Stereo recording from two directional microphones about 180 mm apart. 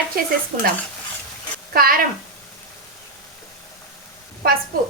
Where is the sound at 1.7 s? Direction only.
55° right (ahead or behind).